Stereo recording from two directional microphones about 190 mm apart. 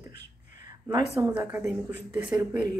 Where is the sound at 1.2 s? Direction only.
15° right (ahead or behind).